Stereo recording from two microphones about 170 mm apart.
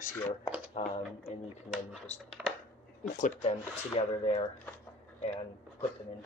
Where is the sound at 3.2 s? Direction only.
45° left (ahead or behind).